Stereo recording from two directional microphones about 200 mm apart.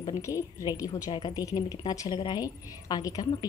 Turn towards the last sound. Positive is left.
turn(degrees=20)  # may be behind; listen again after turning